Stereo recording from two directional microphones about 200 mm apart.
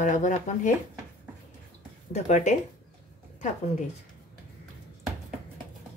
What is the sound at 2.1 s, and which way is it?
Speech, 35° left (ahead or behind).